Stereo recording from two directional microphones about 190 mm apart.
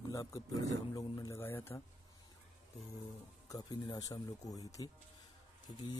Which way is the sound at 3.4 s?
20° left (ahead or behind).